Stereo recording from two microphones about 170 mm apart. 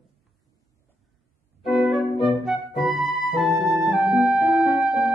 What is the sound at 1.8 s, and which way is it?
Music, centre (ahead or behind).